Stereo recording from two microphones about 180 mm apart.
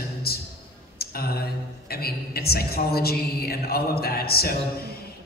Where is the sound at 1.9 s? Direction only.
60° left (ahead or behind).